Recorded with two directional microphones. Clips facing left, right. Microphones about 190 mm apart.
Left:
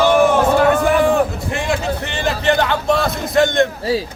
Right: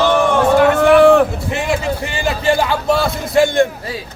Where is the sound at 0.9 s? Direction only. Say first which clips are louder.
Right 6 dB; 75° right (ahead or behind).